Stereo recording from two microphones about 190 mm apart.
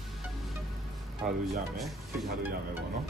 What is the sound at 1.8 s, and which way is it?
Speech, centre (ahead or behind).